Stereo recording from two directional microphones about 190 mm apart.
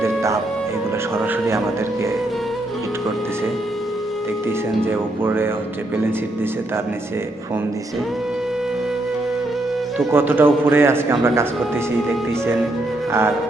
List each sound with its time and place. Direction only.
0.0 s music: 15° right (ahead or behind)
4.9 s a man's voice: 10° right (ahead or behind)
10.1 s a man's voice: 10° right (ahead or behind)